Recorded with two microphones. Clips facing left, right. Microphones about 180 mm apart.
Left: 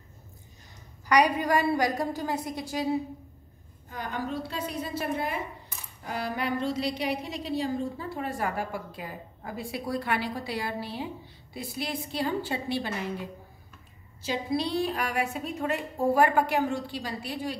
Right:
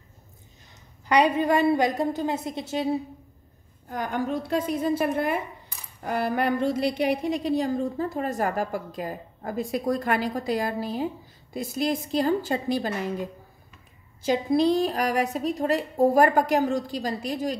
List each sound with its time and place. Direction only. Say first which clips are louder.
1.0 s a woman's voice: right 3 dB; 25° right (ahead or behind)
4.0 s a woman's voice: right 5 dB; 50° right (ahead or behind)